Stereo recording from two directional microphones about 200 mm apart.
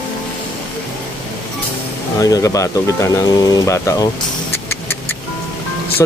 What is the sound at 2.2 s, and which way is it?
Speech, 15° left (ahead or behind).